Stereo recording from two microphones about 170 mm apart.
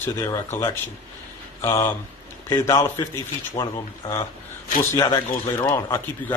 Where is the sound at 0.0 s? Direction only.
15° left (ahead or behind).